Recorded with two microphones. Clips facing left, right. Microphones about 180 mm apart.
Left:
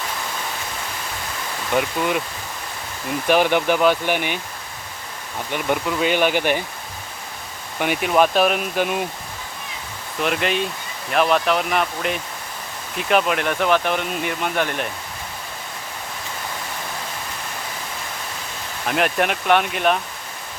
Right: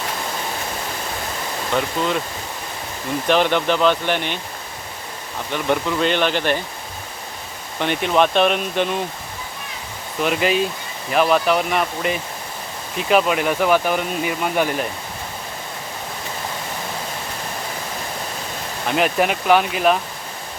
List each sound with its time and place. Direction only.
1.7 s speech: 15° left (ahead or behind)
3.2 s speech: 10° left (ahead or behind)
5.5 s speech: 10° left (ahead or behind)
7.8 s speech: 10° left (ahead or behind)
10.2 s speech: centre (ahead or behind)
18.9 s speech: centre (ahead or behind)